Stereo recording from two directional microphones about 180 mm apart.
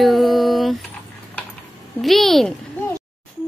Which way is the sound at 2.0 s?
Centre (ahead or behind).